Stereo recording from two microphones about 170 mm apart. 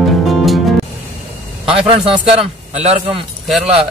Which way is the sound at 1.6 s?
35° right (ahead or behind).